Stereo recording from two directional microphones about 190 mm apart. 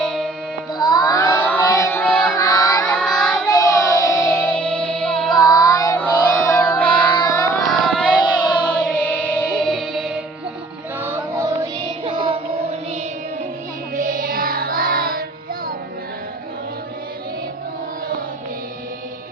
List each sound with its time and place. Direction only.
0.0 s music: 5° left (ahead or behind)
0.7 s music: 20° left (ahead or behind); by 2.2 s 5° left (ahead or behind)
2.3 s chant: 20° left (ahead or behind)
2.9 s child singing: 5° left (ahead or behind)
3.5 s child singing: 20° left (ahead or behind)
4.2 s music: 5° left (ahead or behind)
5.3 s child singing: 20° left (ahead or behind)
6.0 s music: 10° left (ahead or behind)
7.1 s child singing: 20° left (ahead or behind)
7.7 s child singing: 5° left (ahead or behind)
8.7 s music: 5° left (ahead or behind)
11.0 s music: 10° right (ahead or behind)
12.1 s music: 30° right (ahead or behind)
13.9 s music: 45° right (ahead or behind)